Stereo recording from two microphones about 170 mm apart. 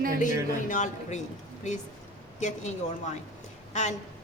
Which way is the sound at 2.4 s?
40° left (ahead or behind).